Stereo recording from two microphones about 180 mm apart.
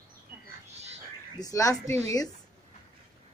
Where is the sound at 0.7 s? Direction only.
35° right (ahead or behind).